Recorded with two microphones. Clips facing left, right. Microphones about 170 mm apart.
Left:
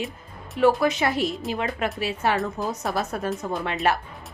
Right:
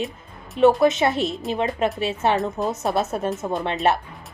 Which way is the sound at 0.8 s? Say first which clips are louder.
Right 4 dB; 25° right (ahead or behind).